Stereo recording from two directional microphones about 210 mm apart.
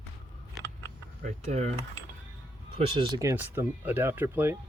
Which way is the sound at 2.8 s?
25° right (ahead or behind).